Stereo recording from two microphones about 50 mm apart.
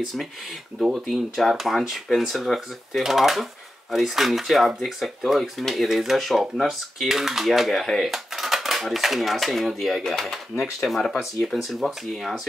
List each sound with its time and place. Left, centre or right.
1.1 s speech: centre